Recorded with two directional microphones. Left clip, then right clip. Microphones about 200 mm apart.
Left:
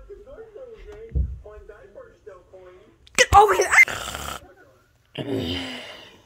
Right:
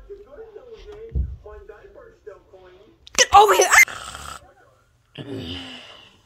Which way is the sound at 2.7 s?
10° left (ahead or behind).